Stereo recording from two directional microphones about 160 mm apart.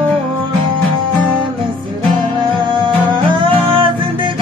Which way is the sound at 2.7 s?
30° right (ahead or behind).